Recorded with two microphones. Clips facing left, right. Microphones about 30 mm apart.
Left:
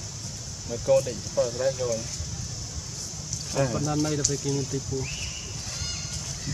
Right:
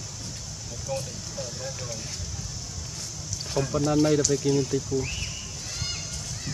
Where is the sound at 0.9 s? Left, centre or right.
Left.